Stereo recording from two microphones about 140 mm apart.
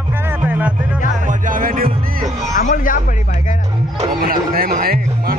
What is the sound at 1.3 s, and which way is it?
Music, 75° right (ahead or behind).